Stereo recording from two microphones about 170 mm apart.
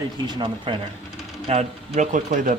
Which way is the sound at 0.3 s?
30° right (ahead or behind).